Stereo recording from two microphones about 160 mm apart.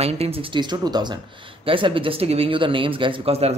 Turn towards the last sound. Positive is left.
turn(degrees=-40)  # may be behind; listen again after turning